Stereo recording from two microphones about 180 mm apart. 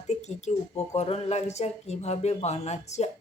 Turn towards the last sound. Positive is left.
turn(degrees=40)  # may be behind; listen again after turning